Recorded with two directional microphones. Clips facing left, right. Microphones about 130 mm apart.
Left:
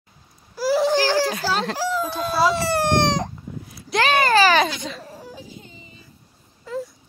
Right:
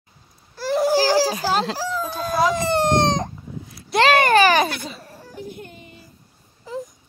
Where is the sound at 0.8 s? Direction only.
10° right (ahead or behind).